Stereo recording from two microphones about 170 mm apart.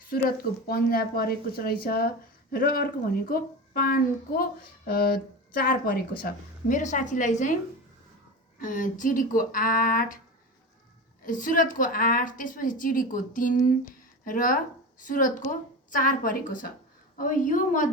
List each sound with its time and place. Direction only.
0.1 s speech: 60° left (ahead or behind)
8.5 s speech: 50° left (ahead or behind)
11.3 s speech: 50° left (ahead or behind)